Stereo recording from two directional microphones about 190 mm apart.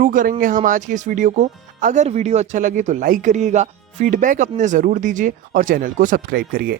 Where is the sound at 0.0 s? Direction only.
45° right (ahead or behind).